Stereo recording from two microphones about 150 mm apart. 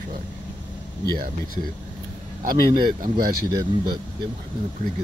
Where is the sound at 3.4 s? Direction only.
30° right (ahead or behind).